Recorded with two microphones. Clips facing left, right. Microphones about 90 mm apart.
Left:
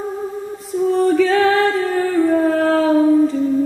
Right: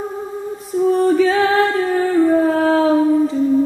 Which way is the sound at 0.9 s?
20° right (ahead or behind).